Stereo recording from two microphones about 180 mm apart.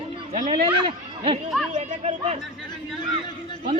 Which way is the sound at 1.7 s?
45° right (ahead or behind).